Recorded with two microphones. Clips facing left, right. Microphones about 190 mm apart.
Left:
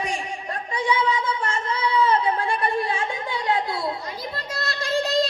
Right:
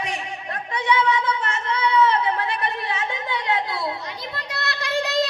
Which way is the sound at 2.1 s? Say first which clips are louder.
Left 1 dB; 30° left (ahead or behind).